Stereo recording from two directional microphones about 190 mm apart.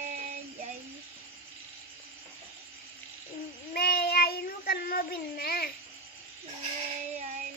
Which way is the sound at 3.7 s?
55° left (ahead or behind).